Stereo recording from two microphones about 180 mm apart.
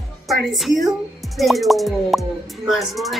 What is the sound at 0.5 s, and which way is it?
Speech, centre (ahead or behind).